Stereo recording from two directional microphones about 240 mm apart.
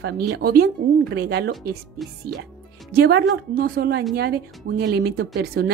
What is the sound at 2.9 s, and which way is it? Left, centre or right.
A woman's voice, right.